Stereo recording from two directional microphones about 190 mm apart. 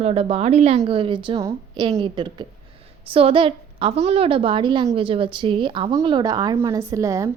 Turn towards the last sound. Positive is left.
turn(degrees=-15)  # may be behind; listen again after turning